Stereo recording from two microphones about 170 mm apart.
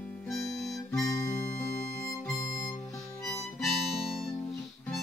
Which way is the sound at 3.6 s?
Centre (ahead or behind).